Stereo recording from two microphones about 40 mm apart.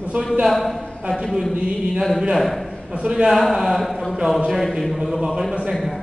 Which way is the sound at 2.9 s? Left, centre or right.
Right.